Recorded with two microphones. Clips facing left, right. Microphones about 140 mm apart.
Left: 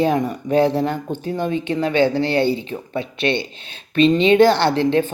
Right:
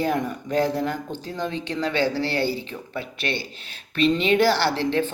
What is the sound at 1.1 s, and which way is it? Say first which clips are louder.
Speech: left 7 dB; 15° left (ahead or behind).